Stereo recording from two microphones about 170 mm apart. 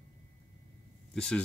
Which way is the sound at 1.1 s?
5° left (ahead or behind).